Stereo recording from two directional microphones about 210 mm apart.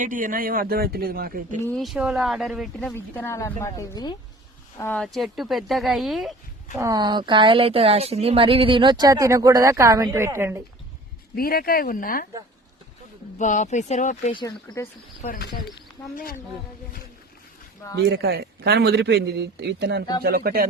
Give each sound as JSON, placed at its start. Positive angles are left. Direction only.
{"t": 0.0, "sound": "speech", "side_deg": -40}
{"t": 1.7, "sound": "speech", "side_deg": 0}
{"t": 2.9, "sound": "speech", "side_deg": 10}
{"t": 4.8, "sound": "speech", "side_deg": 5}
{"t": 6.7, "sound": "speech", "side_deg": -15}
{"t": 11.3, "sound": "speech", "side_deg": 45}
{"t": 13.4, "sound": "speech", "side_deg": 35}
{"t": 14.3, "sound": "speech", "side_deg": 20}
{"t": 15.7, "sound": "speech", "side_deg": 45}
{"t": 17.9, "sound": "speech", "side_deg": -50}